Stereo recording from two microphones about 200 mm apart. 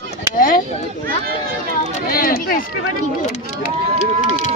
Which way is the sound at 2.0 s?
45° left (ahead or behind).